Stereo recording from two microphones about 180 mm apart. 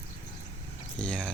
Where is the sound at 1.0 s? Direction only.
5° left (ahead or behind).